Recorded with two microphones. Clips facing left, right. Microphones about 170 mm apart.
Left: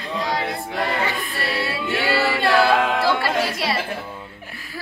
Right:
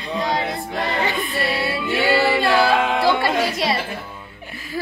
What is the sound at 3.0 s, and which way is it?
Music, 20° right (ahead or behind).